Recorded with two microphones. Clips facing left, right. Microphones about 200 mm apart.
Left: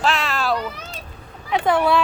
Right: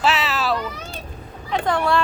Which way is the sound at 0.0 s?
5° right (ahead or behind).